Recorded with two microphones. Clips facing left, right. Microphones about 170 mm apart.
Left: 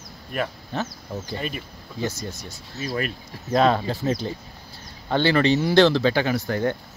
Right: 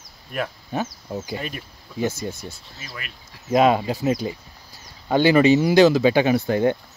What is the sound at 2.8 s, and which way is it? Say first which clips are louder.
Speech: left 12 dB; 35° left (ahead or behind).